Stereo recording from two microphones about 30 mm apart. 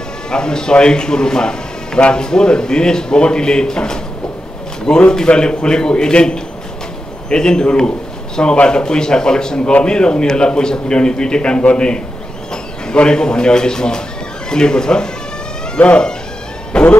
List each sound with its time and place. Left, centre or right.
0.3 s a man's voice: left
15.8 s speech: left
16.7 s vehicle: left